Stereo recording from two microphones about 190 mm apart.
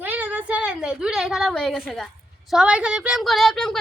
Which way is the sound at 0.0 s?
10° right (ahead or behind).